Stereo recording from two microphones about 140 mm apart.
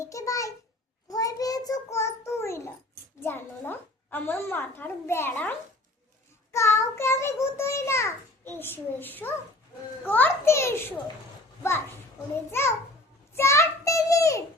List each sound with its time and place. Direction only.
0.0 s a sound: 25° left (ahead or behind)
1.0 s child singing: 25° left (ahead or behind)
3.2 s a child's voice: 15° left (ahead or behind)
12.5 s a child's voice: 20° left (ahead or behind)